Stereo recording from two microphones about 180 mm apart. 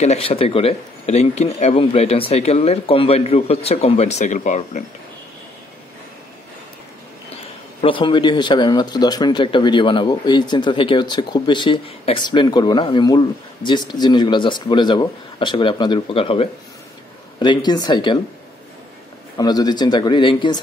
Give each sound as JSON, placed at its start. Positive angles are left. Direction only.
{"t": 0.0, "sound": "speech", "side_deg": 35}
{"t": 7.8, "sound": "speech", "side_deg": 25}
{"t": 19.3, "sound": "speech", "side_deg": 20}